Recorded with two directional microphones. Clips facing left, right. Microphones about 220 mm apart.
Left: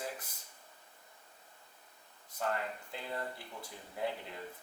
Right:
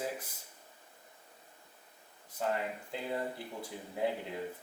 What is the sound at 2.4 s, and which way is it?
Speech, 15° right (ahead or behind).